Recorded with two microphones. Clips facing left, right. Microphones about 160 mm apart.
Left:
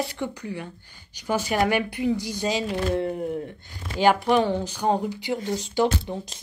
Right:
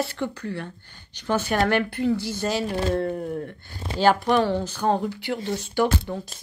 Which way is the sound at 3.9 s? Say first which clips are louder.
Even; 15° left (ahead or behind).